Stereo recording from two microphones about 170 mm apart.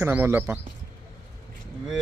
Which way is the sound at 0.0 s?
15° right (ahead or behind).